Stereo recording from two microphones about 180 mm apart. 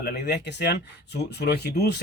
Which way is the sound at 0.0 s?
60° left (ahead or behind).